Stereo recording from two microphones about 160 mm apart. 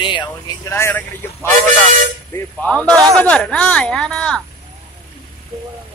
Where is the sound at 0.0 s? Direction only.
30° left (ahead or behind).